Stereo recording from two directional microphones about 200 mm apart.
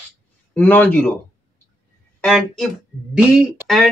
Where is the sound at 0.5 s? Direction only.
10° left (ahead or behind).